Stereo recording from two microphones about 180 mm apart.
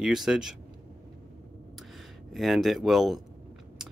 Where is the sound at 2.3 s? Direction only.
Centre (ahead or behind).